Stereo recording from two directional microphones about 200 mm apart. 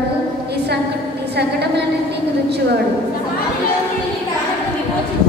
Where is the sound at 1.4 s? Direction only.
55° right (ahead or behind).